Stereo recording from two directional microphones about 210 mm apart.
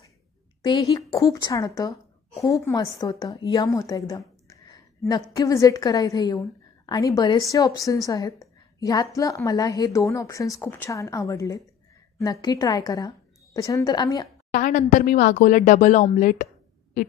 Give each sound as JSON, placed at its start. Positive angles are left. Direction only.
{"t": 0.6, "sound": "a woman's voice", "side_deg": 20}
{"t": 14.5, "sound": "speech", "side_deg": 40}